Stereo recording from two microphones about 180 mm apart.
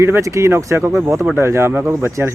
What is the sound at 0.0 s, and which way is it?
A woman's voice, 15° right (ahead or behind).